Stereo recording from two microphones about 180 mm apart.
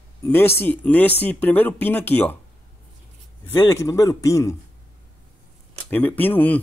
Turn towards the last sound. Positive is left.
turn(degrees=10)  # may be behind; listen again after turning